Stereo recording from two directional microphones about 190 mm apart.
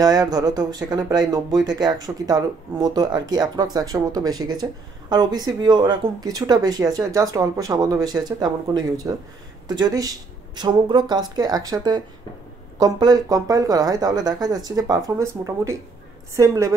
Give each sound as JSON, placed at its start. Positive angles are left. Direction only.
{"t": 0.0, "sound": "a woman's voice", "side_deg": -20}